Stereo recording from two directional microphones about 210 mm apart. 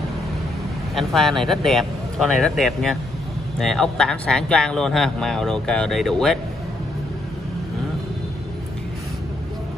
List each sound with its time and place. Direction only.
0.9 s speech: centre (ahead or behind)